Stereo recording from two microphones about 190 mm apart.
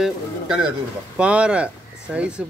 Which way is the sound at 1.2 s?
5° right (ahead or behind).